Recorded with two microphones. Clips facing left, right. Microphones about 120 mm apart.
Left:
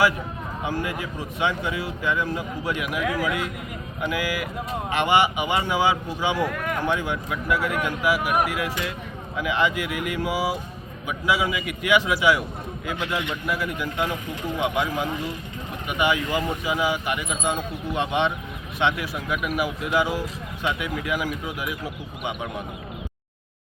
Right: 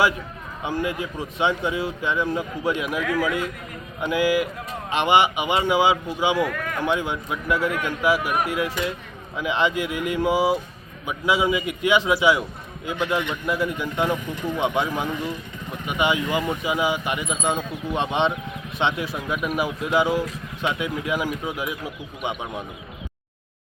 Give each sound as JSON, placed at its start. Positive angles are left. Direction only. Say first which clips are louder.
{"t": 0.6, "sound": "a man's voice", "louder": "right 3 dB", "side_deg": -20}
{"t": 3.0, "sound": "speech", "louder": "even", "side_deg": 10}
{"t": 4.0, "sound": "a man's voice", "louder": "right 6 dB", "side_deg": -25}
{"t": 6.4, "sound": "speech", "louder": "even", "side_deg": 10}
{"t": 6.8, "sound": "a man's voice", "louder": "right 4 dB", "side_deg": -20}